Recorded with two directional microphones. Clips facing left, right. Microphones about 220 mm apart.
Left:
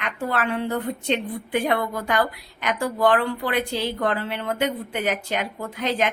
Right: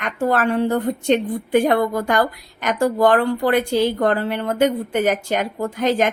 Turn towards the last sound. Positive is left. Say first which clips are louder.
# right 6 dB
turn(degrees=-45)  # may be behind; listen again after turning